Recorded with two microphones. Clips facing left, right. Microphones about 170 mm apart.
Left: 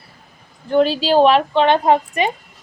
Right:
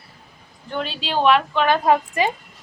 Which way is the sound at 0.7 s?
40° left (ahead or behind).